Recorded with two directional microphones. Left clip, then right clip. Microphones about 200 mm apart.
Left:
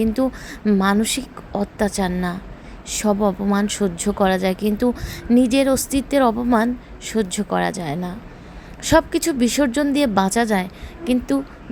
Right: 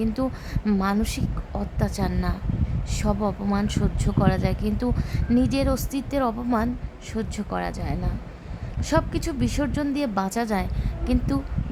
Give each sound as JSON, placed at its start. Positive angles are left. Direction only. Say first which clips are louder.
{"t": 0.0, "sound": "a woman's voice", "louder": "left 6 dB", "side_deg": 15}